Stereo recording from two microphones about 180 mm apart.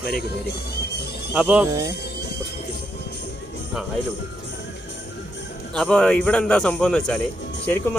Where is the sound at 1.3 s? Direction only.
5° right (ahead or behind).